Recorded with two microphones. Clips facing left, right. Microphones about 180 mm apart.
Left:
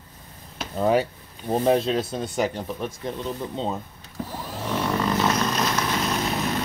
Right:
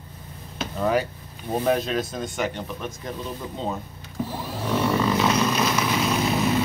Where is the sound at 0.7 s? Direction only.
30° left (ahead or behind).